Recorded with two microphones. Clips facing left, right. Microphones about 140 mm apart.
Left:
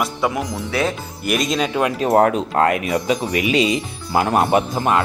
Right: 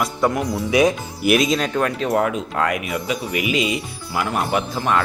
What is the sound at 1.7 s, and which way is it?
Speech, 15° left (ahead or behind).